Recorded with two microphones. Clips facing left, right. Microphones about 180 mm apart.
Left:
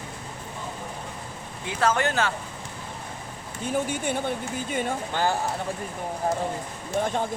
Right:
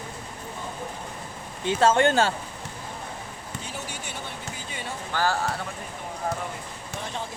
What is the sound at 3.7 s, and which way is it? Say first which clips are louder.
Speech: left 14 dB; 50° left (ahead or behind).